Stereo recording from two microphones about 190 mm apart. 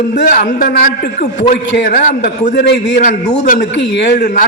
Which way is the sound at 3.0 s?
45° left (ahead or behind).